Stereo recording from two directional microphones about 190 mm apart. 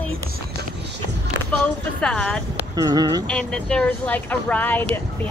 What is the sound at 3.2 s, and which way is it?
Speech, 5° left (ahead or behind).